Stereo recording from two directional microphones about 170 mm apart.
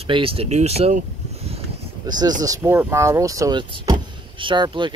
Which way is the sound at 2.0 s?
25° right (ahead or behind).